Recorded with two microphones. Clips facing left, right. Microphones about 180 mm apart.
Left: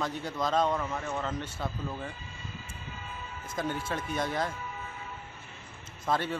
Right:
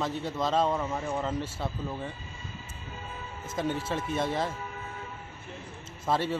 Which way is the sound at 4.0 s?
25° right (ahead or behind).